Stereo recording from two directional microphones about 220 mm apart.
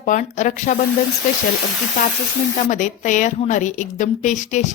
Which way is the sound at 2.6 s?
35° left (ahead or behind).